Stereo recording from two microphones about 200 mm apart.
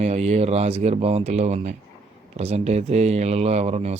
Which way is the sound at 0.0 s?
30° right (ahead or behind).